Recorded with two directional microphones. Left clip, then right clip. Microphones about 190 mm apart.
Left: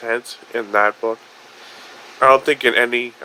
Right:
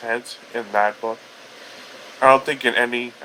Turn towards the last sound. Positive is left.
turn(degrees=25)  # may be behind; listen again after turning